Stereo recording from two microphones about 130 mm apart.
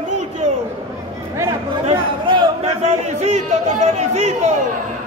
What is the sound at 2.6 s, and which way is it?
Chatter, 60° right (ahead or behind).